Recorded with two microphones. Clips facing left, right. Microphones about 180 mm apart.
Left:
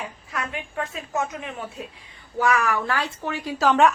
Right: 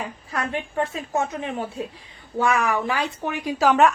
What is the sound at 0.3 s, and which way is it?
A woman's voice, 30° right (ahead or behind).